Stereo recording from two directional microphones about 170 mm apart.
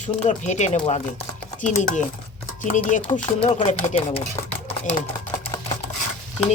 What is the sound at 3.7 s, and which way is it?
Speech, 35° left (ahead or behind).